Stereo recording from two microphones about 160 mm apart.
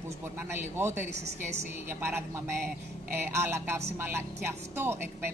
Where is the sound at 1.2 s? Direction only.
45° right (ahead or behind).